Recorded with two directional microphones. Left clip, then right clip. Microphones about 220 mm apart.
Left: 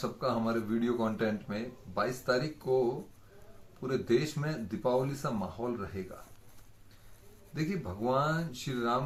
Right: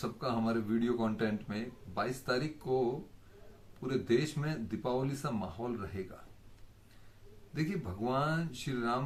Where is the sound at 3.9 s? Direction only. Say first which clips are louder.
Left 2 dB; 50° right (ahead or behind).